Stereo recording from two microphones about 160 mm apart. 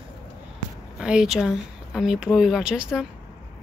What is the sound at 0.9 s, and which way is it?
Speech, 5° right (ahead or behind).